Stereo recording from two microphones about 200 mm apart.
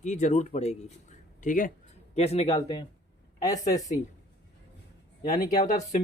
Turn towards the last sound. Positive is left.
turn(degrees=40)  # may be behind; listen again after turning